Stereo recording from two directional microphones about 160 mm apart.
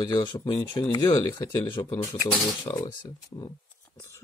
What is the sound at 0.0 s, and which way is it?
Speech, 25° left (ahead or behind).